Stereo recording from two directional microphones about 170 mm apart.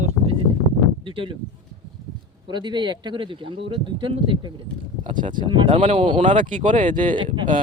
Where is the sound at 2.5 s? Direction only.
25° right (ahead or behind).